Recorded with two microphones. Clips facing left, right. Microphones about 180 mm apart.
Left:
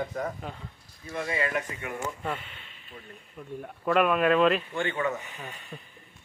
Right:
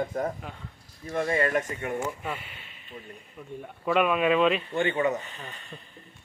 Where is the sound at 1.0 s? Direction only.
45° right (ahead or behind).